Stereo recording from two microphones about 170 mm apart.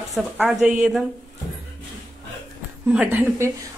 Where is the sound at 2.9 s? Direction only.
5° right (ahead or behind).